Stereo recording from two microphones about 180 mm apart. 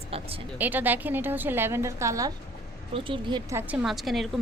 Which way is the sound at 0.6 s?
10° right (ahead or behind).